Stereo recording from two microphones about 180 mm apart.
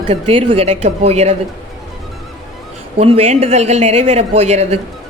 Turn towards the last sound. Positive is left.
turn(degrees=-35)  # may be behind; listen again after turning